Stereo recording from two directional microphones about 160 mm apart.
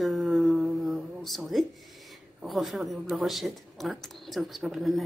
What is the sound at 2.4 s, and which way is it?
Speech, centre (ahead or behind).